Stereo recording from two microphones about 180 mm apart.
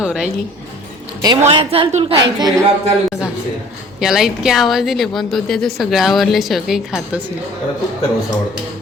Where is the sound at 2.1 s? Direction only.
25° right (ahead or behind).